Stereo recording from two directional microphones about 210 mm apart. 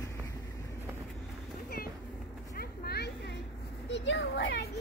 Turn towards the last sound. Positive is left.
turn(degrees=55)  # may be behind; listen again after turning